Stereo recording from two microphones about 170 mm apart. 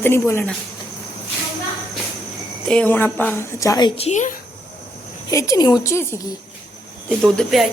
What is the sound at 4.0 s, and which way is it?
Speech, 40° left (ahead or behind).